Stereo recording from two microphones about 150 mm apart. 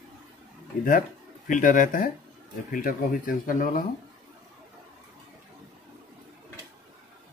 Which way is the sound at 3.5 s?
65° left (ahead or behind).